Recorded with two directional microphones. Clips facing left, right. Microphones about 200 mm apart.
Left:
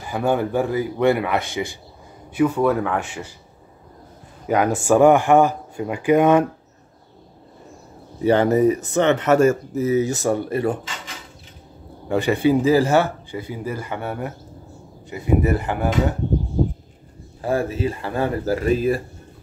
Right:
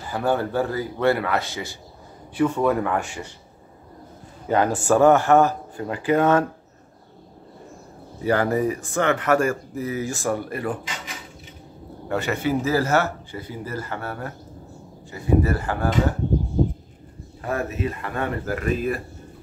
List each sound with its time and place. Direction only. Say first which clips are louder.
0.0 s speech: left 2 dB; 15° left (ahead or behind)
2.3 s speech: left 2 dB; 5° left (ahead or behind)
4.5 s speech: left 2 dB; 10° left (ahead or behind)
8.2 s speech: left 5 dB; 25° left (ahead or behind)
12.1 s speech: left 6 dB; 15° left (ahead or behind)
17.4 s speech: left 4 dB; 30° left (ahead or behind)